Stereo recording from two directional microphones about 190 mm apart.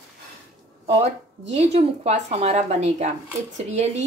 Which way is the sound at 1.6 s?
35° right (ahead or behind).